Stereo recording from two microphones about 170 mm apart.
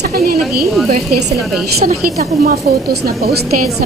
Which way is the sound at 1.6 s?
65° right (ahead or behind).